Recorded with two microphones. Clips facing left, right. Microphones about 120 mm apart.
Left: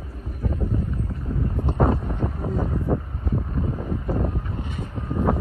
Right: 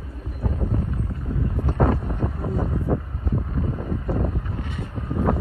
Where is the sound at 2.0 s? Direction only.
5° right (ahead or behind).